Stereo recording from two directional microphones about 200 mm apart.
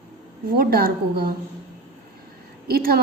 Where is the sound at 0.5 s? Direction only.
50° right (ahead or behind).